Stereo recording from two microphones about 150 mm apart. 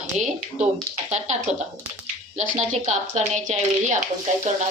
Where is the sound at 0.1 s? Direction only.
50° right (ahead or behind).